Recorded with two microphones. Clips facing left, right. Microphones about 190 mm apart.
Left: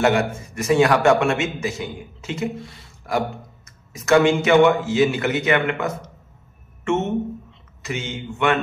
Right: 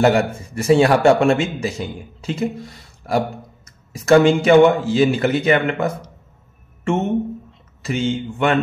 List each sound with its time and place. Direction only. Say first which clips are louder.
0.0 s a man's voice: right 3 dB; 35° right (ahead or behind)
7.8 s a man's voice: right 8 dB; 30° right (ahead or behind)